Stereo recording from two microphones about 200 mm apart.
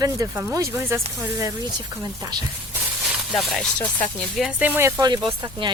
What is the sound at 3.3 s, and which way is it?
Speech, centre (ahead or behind).